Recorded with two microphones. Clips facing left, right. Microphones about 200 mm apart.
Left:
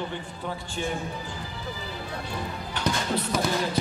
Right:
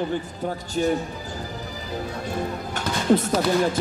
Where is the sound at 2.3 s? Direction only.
45° right (ahead or behind).